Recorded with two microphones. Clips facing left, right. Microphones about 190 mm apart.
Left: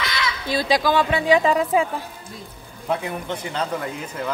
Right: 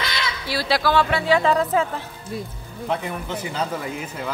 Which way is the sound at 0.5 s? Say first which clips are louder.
Left 2 dB; 20° left (ahead or behind).